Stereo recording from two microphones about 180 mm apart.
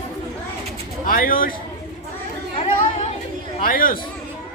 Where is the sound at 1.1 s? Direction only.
50° left (ahead or behind).